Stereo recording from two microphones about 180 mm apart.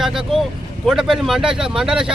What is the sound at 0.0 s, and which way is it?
Speech, 5° right (ahead or behind).